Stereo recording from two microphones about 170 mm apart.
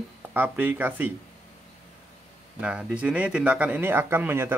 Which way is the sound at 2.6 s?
5° right (ahead or behind).